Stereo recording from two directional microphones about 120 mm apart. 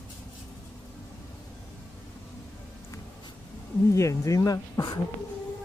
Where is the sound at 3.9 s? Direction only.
25° left (ahead or behind).